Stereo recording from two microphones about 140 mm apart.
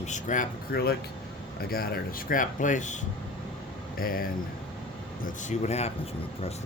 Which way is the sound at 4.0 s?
90° left.